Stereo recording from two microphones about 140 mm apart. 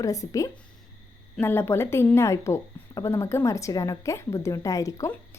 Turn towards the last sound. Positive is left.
turn(degrees=20)  # may be behind; listen again after turning